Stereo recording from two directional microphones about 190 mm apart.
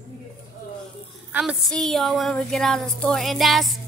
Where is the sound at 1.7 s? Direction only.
Centre (ahead or behind).